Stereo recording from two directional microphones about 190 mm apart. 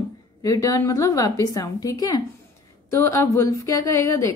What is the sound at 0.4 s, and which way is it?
A woman's voice, 20° left (ahead or behind).